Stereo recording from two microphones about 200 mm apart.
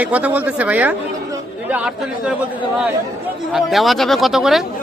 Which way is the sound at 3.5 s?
Centre (ahead or behind).